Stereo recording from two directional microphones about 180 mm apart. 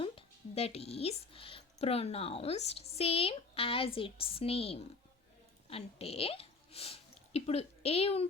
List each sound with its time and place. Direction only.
0.0 s speech: 30° left (ahead or behind)